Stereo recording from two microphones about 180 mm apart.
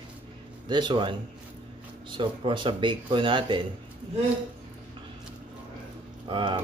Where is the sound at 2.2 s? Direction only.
30° right (ahead or behind).